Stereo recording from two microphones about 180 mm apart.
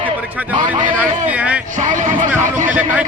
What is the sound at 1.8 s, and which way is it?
Speech, 45° right (ahead or behind).